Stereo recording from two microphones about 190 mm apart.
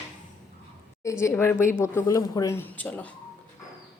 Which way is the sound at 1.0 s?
15° left (ahead or behind).